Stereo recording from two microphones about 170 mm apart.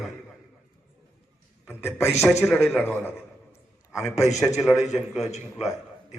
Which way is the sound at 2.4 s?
10° left (ahead or behind).